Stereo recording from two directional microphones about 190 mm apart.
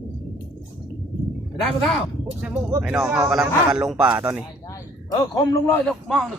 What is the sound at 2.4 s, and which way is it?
A man's voice, 5° right (ahead or behind).